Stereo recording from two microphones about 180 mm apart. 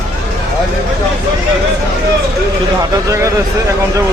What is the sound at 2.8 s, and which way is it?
Speech, 15° right (ahead or behind).